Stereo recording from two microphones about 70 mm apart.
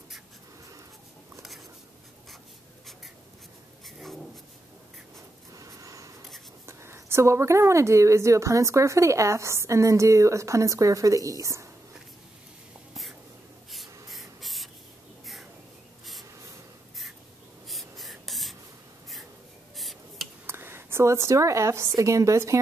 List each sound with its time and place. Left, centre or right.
3.8 s a sound: centre
5.5 s snort: right
6.6 s a woman's voice: right
14.1 s spray: centre
17.6 s writing: centre
19.8 s a sound: centre
20.4 s a woman's voice: right